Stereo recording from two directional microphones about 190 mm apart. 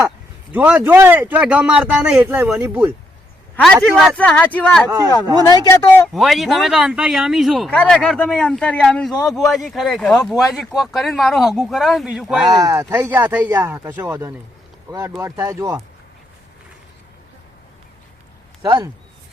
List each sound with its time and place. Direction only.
0.5 s speech: 10° right (ahead or behind)
3.9 s speech: centre (ahead or behind)
4.9 s speech: 20° right (ahead or behind)
5.5 s speech: 20° left (ahead or behind)
6.1 s speech: centre (ahead or behind)
12.5 s speech: 20° right (ahead or behind)
18.6 s speech: 25° right (ahead or behind)